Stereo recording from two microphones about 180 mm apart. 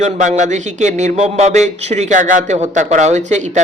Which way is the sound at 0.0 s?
40° right (ahead or behind).